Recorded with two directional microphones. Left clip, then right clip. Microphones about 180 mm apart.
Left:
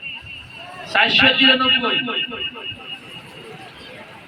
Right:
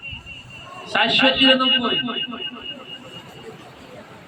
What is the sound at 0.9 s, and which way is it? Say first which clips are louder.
A man's voice: left 3 dB; 60° right (ahead or behind).